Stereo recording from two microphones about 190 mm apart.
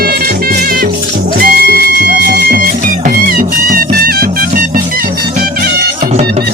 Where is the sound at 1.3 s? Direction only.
50° right (ahead or behind).